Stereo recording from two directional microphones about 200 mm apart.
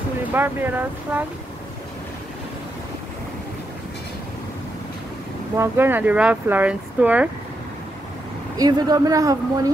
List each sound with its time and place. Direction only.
0.2 s speech: 10° right (ahead or behind)
5.6 s speech: 10° right (ahead or behind)
8.5 s speech: 20° right (ahead or behind)